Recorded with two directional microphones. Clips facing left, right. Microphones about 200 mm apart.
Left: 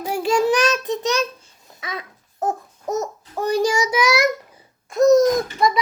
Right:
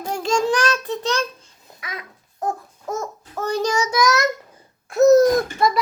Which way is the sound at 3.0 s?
15° left (ahead or behind).